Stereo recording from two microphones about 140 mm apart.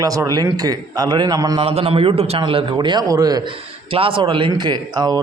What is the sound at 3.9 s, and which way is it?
A man's voice, 40° right (ahead or behind).